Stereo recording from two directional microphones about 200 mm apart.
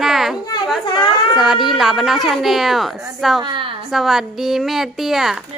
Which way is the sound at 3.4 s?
25° right (ahead or behind).